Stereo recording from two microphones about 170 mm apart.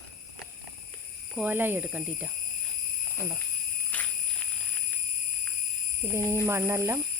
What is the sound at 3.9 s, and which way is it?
Jingle bell, 10° left (ahead or behind).